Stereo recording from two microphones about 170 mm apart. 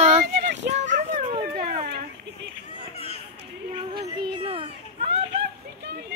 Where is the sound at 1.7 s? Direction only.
60° right (ahead or behind).